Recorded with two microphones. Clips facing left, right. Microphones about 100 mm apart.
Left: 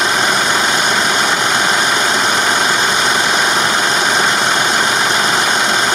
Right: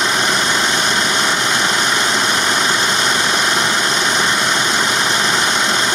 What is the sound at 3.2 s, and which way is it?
Vehicle, 50° left (ahead or behind).